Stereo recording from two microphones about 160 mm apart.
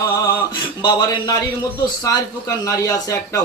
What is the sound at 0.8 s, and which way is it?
Speech, 25° left (ahead or behind).